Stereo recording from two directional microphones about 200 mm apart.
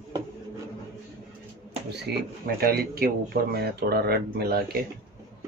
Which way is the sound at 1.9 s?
55° right (ahead or behind).